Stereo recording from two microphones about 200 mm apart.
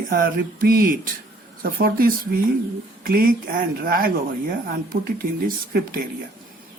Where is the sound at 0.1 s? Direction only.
45° right (ahead or behind).